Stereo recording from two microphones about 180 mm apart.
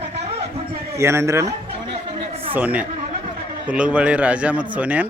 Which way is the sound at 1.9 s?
30° right (ahead or behind).